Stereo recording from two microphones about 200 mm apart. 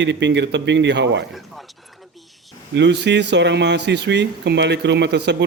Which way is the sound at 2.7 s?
60° right (ahead or behind).